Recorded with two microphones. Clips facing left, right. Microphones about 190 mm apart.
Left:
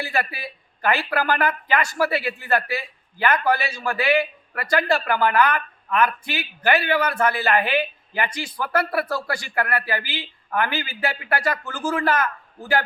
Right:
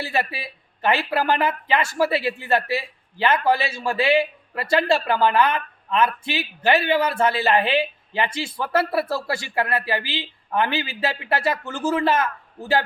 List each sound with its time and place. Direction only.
0.0 s speech: 25° right (ahead or behind)